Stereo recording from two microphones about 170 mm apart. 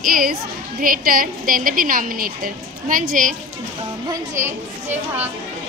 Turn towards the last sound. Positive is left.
turn(degrees=-10)  # may be behind; listen again after turning